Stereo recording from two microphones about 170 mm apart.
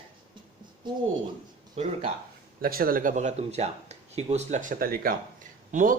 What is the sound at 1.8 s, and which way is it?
Speech, 35° right (ahead or behind).